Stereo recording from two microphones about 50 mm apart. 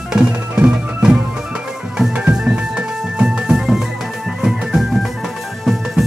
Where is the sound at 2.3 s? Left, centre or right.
Centre.